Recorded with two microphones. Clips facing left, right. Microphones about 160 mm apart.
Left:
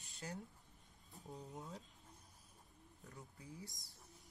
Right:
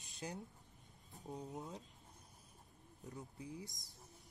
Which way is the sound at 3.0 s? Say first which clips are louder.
Right 6 dB; 20° right (ahead or behind).